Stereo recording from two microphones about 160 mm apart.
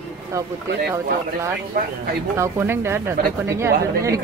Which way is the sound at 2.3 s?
15° right (ahead or behind).